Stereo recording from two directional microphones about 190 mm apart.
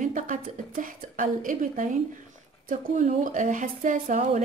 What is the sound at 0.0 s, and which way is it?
A woman's voice, 40° right (ahead or behind).